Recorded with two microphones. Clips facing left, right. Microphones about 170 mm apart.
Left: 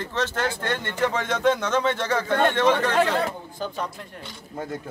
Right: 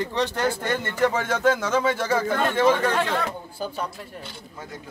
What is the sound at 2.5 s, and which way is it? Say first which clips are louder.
Speech: right 1 dB; 5° right (ahead or behind).